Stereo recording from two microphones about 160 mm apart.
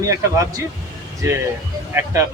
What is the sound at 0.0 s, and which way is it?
Speech, 20° right (ahead or behind).